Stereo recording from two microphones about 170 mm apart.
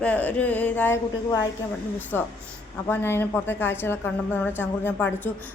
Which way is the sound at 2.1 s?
10° left (ahead or behind).